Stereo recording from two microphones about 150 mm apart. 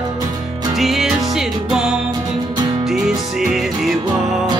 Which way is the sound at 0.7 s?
Centre (ahead or behind).